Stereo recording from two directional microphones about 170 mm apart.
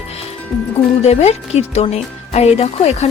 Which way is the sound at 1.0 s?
40° left (ahead or behind).